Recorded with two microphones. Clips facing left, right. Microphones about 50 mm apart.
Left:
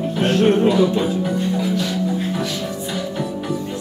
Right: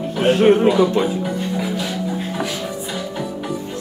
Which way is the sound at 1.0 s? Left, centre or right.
Centre.